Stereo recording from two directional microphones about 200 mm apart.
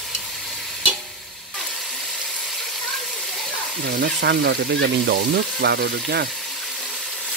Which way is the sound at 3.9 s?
60° right (ahead or behind).